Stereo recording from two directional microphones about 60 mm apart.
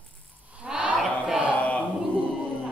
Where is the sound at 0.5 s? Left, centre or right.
Centre.